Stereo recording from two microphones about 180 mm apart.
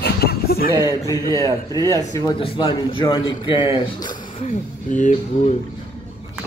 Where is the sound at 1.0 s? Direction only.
20° left (ahead or behind).